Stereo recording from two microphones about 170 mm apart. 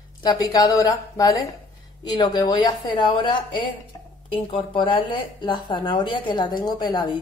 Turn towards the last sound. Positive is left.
turn(degrees=25)  # may be behind; listen again after turning